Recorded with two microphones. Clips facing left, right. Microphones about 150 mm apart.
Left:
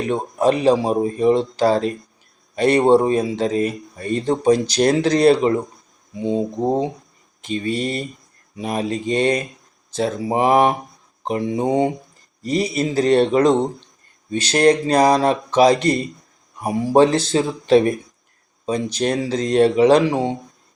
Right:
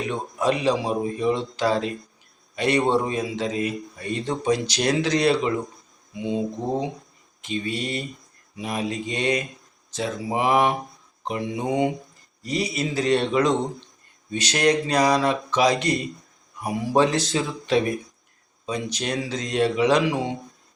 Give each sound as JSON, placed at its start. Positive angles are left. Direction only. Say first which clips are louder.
{"t": 0.1, "sound": "a man's voice", "louder": "left 7 dB", "side_deg": 40}